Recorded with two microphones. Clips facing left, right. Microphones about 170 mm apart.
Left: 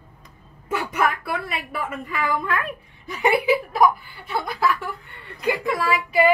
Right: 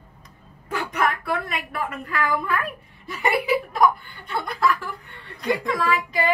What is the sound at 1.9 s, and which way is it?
Speech, centre (ahead or behind).